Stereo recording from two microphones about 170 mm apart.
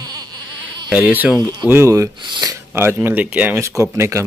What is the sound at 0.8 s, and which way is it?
Speech, 10° right (ahead or behind).